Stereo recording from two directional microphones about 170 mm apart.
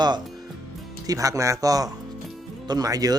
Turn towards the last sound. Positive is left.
turn(degrees=-20)  # may be behind; listen again after turning